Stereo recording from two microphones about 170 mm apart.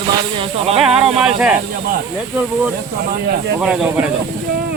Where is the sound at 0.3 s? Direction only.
35° right (ahead or behind).